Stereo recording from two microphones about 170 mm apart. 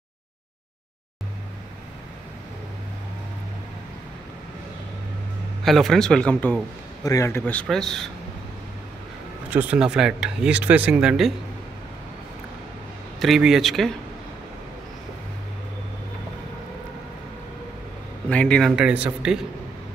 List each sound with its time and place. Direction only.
5.6 s speech: centre (ahead or behind)
7.0 s a man's voice: 20° left (ahead or behind); by 8.1 s 5° left (ahead or behind)
9.5 s speech: 10° right (ahead or behind)
13.2 s speech: centre (ahead or behind)
18.3 s speech: 5° left (ahead or behind)